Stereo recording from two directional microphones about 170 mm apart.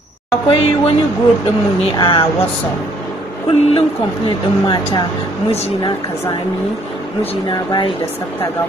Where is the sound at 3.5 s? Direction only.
30° left (ahead or behind).